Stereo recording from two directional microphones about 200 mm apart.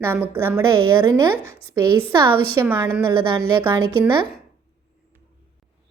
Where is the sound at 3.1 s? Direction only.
25° right (ahead or behind).